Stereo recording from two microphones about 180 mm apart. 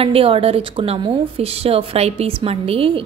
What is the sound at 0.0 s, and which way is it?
A woman's voice, 30° right (ahead or behind).